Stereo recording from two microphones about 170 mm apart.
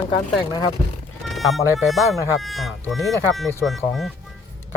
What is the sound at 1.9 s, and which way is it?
Speech, centre (ahead or behind).